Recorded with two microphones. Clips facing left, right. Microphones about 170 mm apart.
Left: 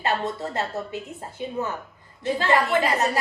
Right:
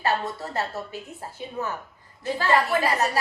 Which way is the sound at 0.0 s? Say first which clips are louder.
Left 1 dB; 20° left (ahead or behind).